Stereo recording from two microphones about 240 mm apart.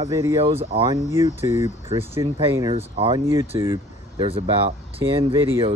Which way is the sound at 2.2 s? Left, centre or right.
Right.